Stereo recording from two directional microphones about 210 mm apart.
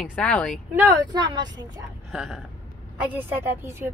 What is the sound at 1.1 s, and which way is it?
Speech, 20° right (ahead or behind).